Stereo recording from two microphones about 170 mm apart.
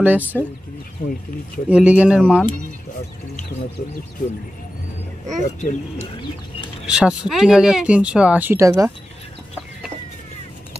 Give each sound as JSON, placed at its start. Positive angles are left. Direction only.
{"t": 0.0, "sound": "speech", "side_deg": -10}
{"t": 1.7, "sound": "speech", "side_deg": -5}
{"t": 5.4, "sound": "speech", "side_deg": 45}
{"t": 6.9, "sound": "speech", "side_deg": -5}